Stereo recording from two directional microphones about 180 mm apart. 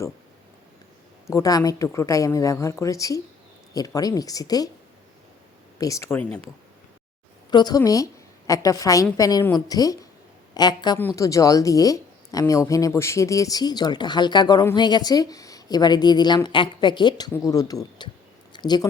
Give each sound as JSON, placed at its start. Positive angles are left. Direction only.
{"t": 1.3, "sound": "a woman's voice", "side_deg": 20}
{"t": 5.8, "sound": "speech", "side_deg": 15}
{"t": 7.5, "sound": "a woman's voice", "side_deg": 20}